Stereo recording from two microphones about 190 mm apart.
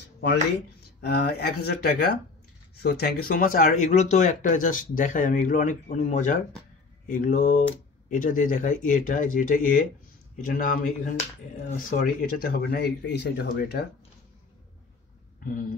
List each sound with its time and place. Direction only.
1.0 s speech: 55° left (ahead or behind)